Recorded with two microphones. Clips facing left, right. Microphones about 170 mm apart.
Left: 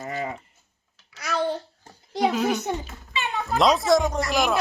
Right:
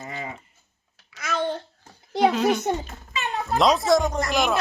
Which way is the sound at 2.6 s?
40° right (ahead or behind).